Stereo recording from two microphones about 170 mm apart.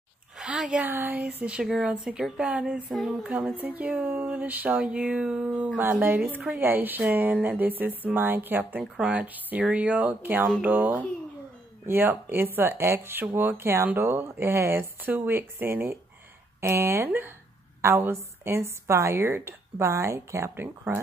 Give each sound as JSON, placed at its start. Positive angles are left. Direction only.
{"t": 0.4, "sound": "a woman's voice", "side_deg": -5}